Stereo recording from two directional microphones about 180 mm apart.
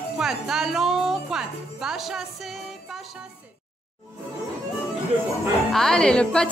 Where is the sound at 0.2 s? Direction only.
Centre (ahead or behind).